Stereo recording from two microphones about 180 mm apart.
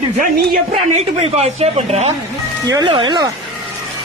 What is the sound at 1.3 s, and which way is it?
Speech, 35° right (ahead or behind).